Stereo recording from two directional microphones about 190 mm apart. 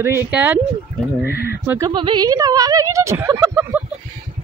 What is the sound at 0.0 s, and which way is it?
Speech, 10° right (ahead or behind).